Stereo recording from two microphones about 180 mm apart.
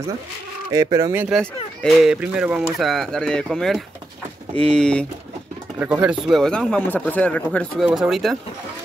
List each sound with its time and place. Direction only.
0.7 s speech: 20° right (ahead or behind)
1.8 s speech: centre (ahead or behind)
5.8 s speech: 5° right (ahead or behind)